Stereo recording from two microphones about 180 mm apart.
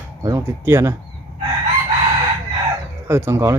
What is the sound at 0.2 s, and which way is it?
Speech, 20° right (ahead or behind).